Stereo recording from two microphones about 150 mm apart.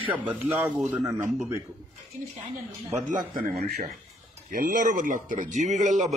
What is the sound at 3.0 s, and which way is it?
Speech, 60° right (ahead or behind).